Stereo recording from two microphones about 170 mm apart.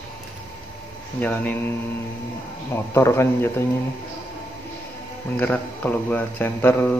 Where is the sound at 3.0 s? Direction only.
15° left (ahead or behind).